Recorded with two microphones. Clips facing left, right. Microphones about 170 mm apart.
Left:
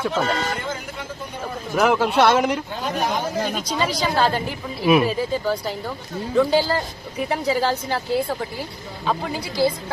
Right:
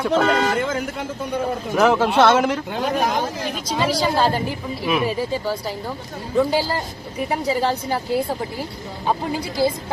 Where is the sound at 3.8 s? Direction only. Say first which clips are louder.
Right 2 dB; 5° right (ahead or behind).